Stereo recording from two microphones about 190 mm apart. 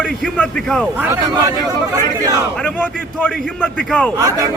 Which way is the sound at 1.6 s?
20° right (ahead or behind).